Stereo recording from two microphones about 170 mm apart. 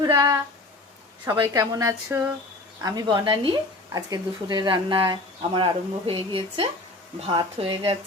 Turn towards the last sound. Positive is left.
turn(degrees=-30)  # may be behind; listen again after turning